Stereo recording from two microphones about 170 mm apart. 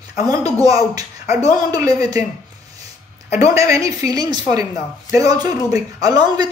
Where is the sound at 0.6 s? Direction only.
20° right (ahead or behind).